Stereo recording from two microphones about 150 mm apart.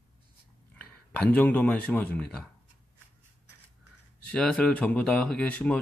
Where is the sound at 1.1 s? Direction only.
10° left (ahead or behind).